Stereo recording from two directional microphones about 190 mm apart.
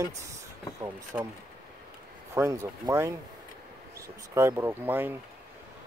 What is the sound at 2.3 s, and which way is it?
Speech, 15° right (ahead or behind).